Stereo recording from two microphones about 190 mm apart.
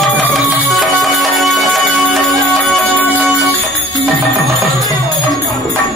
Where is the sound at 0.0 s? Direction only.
Centre (ahead or behind).